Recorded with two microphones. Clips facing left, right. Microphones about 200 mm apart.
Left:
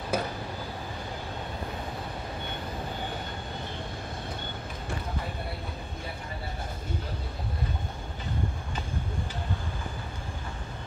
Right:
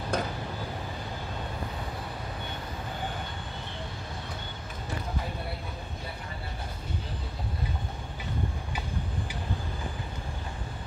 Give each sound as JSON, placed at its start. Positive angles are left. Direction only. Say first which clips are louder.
{"t": 0.1, "sound": "vehicle", "louder": "left 1 dB", "side_deg": 5}